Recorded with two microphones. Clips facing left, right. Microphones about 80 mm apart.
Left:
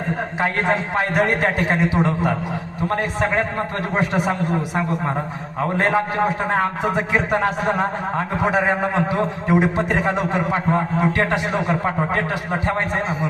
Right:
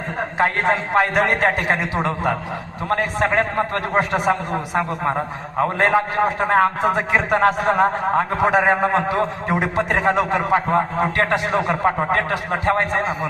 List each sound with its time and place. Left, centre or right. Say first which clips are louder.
0.9 s a man's voice: right 3 dB; right